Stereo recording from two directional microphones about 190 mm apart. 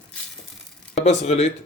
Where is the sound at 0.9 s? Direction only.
35° left (ahead or behind).